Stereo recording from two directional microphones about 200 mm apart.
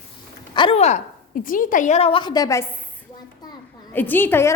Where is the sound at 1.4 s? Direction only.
40° left (ahead or behind); by 2.6 s 15° left (ahead or behind).